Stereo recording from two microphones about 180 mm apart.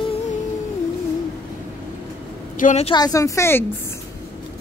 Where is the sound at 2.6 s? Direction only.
45° left (ahead or behind).